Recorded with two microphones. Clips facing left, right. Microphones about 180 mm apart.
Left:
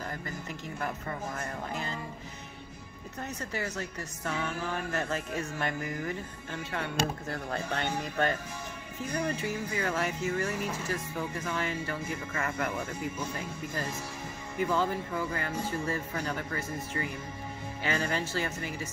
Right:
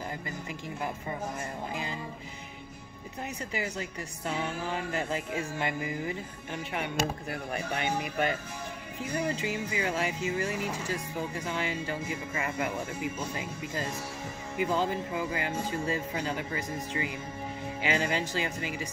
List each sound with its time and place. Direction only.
0.5 s speech: 15° right (ahead or behind)
3.2 s speech: 15° right (ahead or behind)